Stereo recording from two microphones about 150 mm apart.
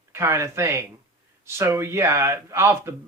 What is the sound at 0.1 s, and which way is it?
Speech, 15° right (ahead or behind).